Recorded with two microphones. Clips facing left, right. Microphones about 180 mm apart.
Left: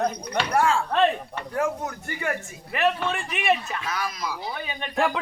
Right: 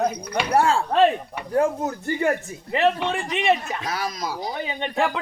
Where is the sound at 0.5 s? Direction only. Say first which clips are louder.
Right 3 dB; 35° right (ahead or behind).